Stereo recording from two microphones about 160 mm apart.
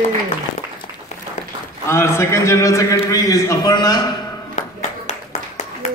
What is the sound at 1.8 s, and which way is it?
A man's voice, 15° left (ahead or behind).